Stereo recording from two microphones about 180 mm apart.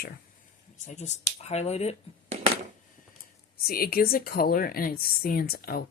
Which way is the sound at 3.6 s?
55° left (ahead or behind).